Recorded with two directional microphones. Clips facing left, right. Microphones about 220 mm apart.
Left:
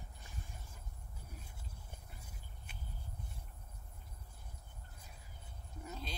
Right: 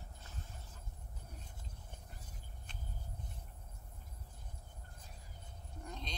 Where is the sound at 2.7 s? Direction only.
10° left (ahead or behind).